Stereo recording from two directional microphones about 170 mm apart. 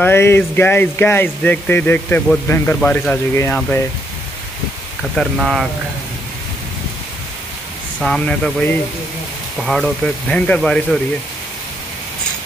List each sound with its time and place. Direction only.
0.0 s speech: 15° left (ahead or behind)
5.1 s speech: centre (ahead or behind)
8.0 s speech: centre (ahead or behind)